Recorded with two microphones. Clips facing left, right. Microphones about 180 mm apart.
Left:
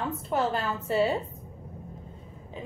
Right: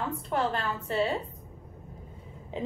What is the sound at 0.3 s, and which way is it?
Speech, centre (ahead or behind).